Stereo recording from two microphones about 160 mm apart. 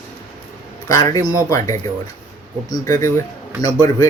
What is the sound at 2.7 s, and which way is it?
Speech, 20° left (ahead or behind).